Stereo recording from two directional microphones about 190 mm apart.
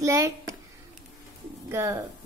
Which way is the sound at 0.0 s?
15° right (ahead or behind).